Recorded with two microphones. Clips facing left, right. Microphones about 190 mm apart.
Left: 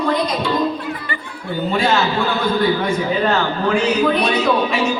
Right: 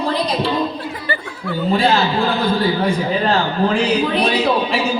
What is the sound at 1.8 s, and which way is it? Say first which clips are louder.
A man's voice: even; 35° right (ahead or behind).